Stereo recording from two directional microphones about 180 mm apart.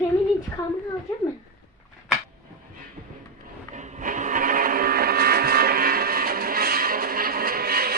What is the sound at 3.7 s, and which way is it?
Vehicle, 45° right (ahead or behind).